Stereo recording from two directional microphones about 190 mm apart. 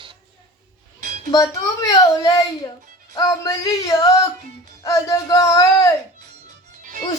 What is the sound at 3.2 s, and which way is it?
Speech, 20° left (ahead or behind).